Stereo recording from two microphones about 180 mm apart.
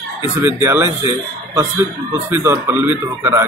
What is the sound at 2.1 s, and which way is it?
A man's voice, 10° right (ahead or behind).